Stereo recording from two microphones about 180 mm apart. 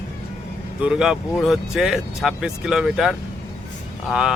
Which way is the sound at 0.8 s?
5° right (ahead or behind).